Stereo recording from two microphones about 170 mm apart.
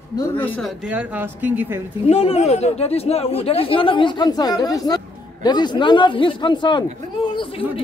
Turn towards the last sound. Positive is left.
turn(degrees=30)  # may be behind; listen again after turning